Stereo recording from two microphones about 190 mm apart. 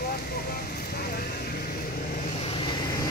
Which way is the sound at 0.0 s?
50° left (ahead or behind).